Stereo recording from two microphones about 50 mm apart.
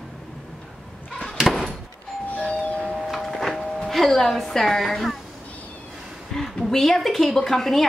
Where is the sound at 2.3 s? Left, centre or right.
Left.